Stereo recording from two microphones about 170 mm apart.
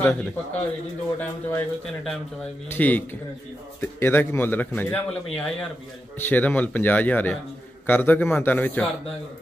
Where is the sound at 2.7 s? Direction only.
10° left (ahead or behind).